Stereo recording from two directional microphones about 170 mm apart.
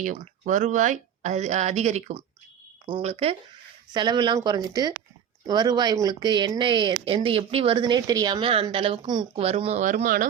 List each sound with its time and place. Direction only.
0.0 s speech: 50° right (ahead or behind)
3.9 s a woman's voice: 25° right (ahead or behind); by 10.2 s 50° right (ahead or behind)